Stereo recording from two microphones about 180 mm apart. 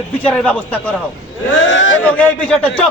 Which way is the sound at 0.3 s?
5° left (ahead or behind).